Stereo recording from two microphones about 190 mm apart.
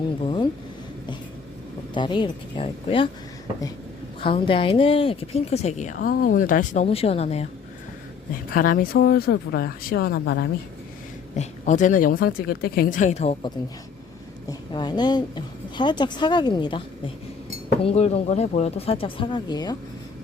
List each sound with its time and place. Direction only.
0.2 s speech: 25° left (ahead or behind)
1.9 s a woman's voice: 25° left (ahead or behind)
4.2 s speech: 25° left (ahead or behind)
8.5 s speech: 50° left (ahead or behind)
11.3 s speech: 40° left (ahead or behind)
14.4 s a woman's voice: 25° left (ahead or behind)